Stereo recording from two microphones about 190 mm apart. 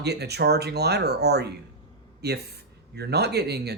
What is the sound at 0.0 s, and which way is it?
Speech, 60° right (ahead or behind).